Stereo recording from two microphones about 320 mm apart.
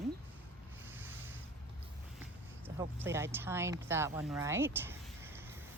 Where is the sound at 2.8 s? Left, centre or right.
Centre.